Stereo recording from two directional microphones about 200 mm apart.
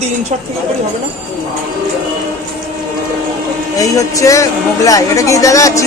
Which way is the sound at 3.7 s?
15° left (ahead or behind).